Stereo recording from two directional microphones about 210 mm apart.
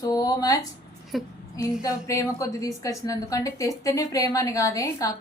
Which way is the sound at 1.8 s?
15° left (ahead or behind).